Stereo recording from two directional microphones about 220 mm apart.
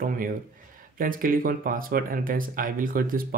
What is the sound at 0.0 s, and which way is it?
Speech, 40° right (ahead or behind).